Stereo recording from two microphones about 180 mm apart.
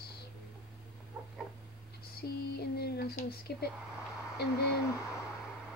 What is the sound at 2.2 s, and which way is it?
Speech, 60° left (ahead or behind).